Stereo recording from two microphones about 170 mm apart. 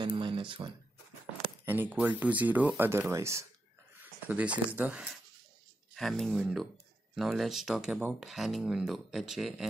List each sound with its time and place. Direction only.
0.0 s speech: 30° right (ahead or behind)
1.7 s speech: 10° right (ahead or behind)